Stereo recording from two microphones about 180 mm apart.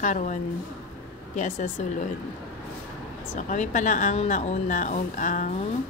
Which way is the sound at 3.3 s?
45° left (ahead or behind).